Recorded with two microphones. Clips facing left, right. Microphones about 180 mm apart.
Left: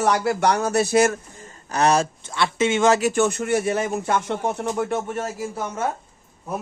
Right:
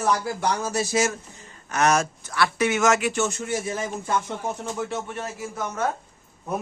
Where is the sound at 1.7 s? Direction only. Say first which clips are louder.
Left 2 dB; 30° left (ahead or behind).